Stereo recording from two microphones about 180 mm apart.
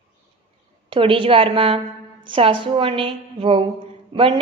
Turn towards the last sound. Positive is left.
turn(degrees=-30)  # may be behind; listen again after turning